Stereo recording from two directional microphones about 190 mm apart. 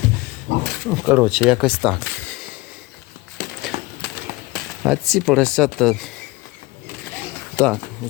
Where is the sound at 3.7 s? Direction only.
25° right (ahead or behind).